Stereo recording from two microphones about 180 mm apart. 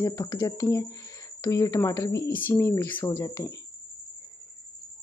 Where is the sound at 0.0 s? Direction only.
20° left (ahead or behind).